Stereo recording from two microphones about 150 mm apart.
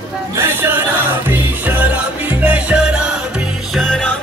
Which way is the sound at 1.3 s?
10° right (ahead or behind).